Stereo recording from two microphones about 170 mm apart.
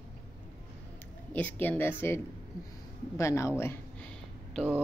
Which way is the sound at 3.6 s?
15° left (ahead or behind).